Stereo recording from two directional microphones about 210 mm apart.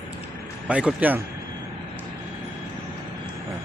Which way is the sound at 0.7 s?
5° right (ahead or behind).